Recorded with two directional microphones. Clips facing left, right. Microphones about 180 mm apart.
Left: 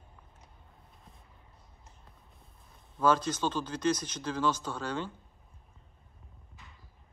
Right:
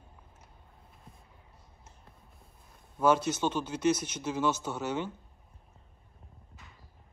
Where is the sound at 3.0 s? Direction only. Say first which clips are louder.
Right 1 dB; 10° right (ahead or behind).